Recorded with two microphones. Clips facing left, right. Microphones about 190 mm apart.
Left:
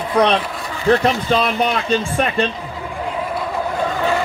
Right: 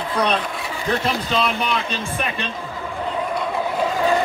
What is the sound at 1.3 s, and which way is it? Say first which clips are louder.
Speech: left 4 dB; 50° left (ahead or behind).